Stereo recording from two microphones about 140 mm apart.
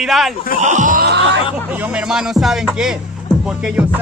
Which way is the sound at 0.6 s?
60° right (ahead or behind).